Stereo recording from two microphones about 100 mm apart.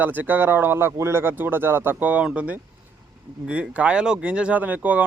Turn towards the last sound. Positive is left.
turn(degrees=-15)  # may be behind; listen again after turning